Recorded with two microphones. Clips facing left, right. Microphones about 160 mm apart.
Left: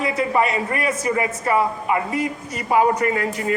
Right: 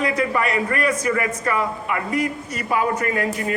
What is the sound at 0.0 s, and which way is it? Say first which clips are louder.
A man's voice: left 1 dB; 25° left (ahead or behind).